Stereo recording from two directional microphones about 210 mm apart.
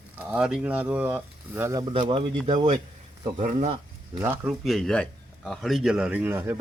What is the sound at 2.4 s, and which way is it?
Speech, 35° right (ahead or behind).